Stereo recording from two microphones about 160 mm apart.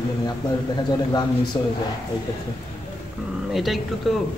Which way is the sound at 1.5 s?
25° left (ahead or behind).